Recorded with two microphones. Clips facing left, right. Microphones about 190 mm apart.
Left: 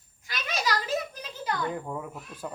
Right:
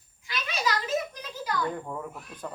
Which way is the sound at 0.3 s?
45° left (ahead or behind).